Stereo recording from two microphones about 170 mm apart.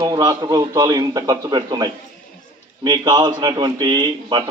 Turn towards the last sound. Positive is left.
turn(degrees=-25)  # may be behind; listen again after turning